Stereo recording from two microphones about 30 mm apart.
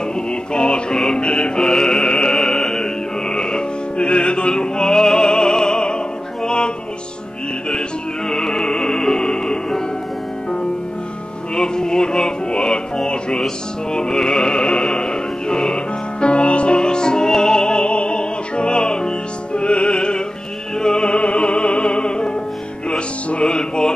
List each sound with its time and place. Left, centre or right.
0.5 s music: left
1.6 s music: left
4.0 s opera: left
6.4 s music: left
8.3 s music: centre
11.5 s music: left
14.5 s music: left
17.8 s music: left
19.5 s music: left